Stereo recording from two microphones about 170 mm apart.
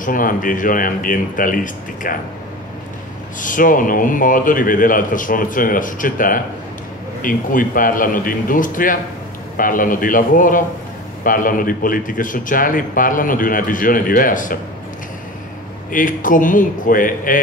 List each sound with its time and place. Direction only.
0.0 s speech: 55° left (ahead or behind)
3.3 s speech: 50° left (ahead or behind)
15.9 s speech: 50° left (ahead or behind)